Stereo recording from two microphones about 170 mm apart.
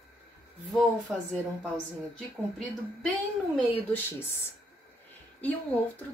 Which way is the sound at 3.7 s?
10° left (ahead or behind).